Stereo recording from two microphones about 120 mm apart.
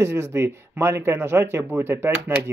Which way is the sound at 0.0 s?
20° right (ahead or behind).